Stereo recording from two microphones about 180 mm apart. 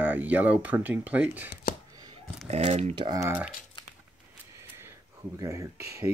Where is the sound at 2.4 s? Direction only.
35° right (ahead or behind).